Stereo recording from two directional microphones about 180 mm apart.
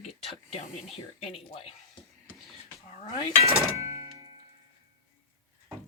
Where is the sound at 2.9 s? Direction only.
35° left (ahead or behind).